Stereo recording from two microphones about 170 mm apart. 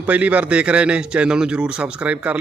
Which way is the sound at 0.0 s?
10° right (ahead or behind).